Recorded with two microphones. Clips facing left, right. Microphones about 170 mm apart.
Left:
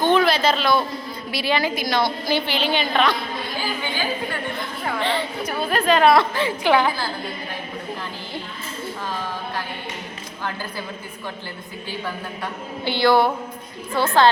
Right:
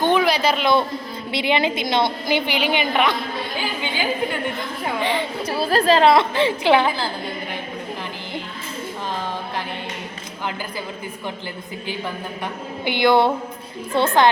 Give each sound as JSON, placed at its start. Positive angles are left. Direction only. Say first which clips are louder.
{"t": 0.0, "sound": "a sound", "louder": "even", "side_deg": -15}
{"t": 1.3, "sound": "a woman's voice", "louder": "right 2 dB", "side_deg": -20}
{"t": 4.9, "sound": "a woman's voice", "louder": "right 1 dB", "side_deg": -15}
{"t": 5.5, "sound": "a woman's voice", "louder": "right 3 dB", "side_deg": -35}
{"t": 12.8, "sound": "a woman's voice", "louder": "right 1 dB", "side_deg": -20}